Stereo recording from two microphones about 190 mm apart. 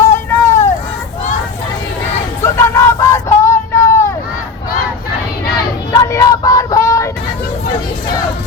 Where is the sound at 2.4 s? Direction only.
15° left (ahead or behind).